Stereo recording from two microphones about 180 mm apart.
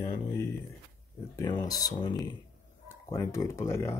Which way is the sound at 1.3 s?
25° left (ahead or behind).